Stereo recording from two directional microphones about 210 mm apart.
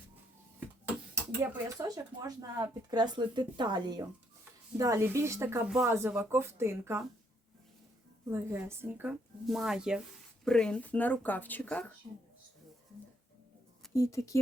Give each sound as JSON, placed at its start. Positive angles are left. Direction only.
{"t": 1.4, "sound": "speech", "side_deg": -15}
{"t": 8.3, "sound": "speech", "side_deg": -10}
{"t": 13.9, "sound": "speech", "side_deg": 15}